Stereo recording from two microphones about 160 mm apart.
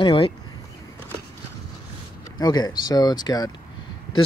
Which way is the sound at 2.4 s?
25° left (ahead or behind).